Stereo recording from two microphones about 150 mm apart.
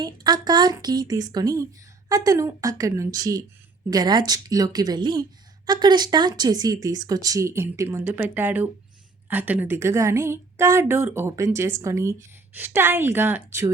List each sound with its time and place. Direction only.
0.0 s a woman's voice: 30° right (ahead or behind)